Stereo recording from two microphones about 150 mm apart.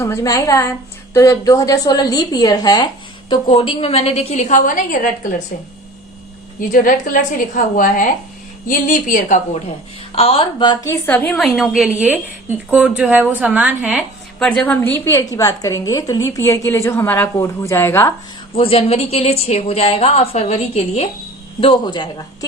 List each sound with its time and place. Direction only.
0.0 s a woman's voice: 20° left (ahead or behind); by 5.1 s 60° left (ahead or behind)
6.6 s a woman's voice: 65° left (ahead or behind)
10.2 s a woman's voice: 40° left (ahead or behind); by 11.3 s 10° left (ahead or behind)
11.3 s a woman's voice: centre (ahead or behind)
14.3 s a woman's voice: 5° left (ahead or behind)
18.5 s speech: 40° left (ahead or behind)
21.6 s a woman's voice: 35° left (ahead or behind)